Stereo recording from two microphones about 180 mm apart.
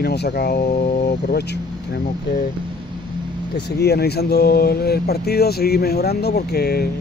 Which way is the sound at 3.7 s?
65° left (ahead or behind).